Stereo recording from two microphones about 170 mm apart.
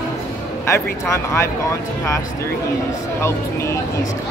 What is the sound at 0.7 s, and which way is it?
Speech, 15° left (ahead or behind).